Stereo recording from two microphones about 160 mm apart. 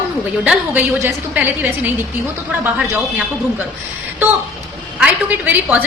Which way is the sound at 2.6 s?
5° right (ahead or behind).